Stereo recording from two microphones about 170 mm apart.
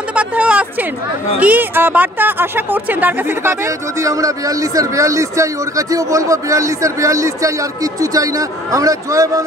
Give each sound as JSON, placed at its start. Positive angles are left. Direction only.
{"t": 0.1, "sound": "speech", "side_deg": -5}